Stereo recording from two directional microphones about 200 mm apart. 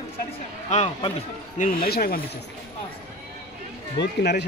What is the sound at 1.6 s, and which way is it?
Speech, 45° left (ahead or behind).